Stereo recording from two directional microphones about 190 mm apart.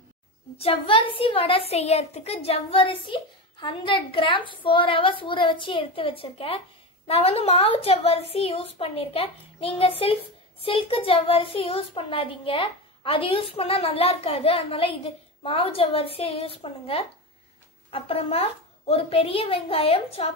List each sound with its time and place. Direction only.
0.6 s a child's voice: 30° left (ahead or behind)